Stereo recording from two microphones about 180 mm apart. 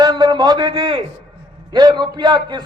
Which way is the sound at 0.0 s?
25° right (ahead or behind).